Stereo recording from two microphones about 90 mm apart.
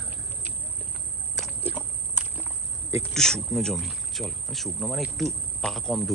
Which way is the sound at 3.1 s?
5° left (ahead or behind).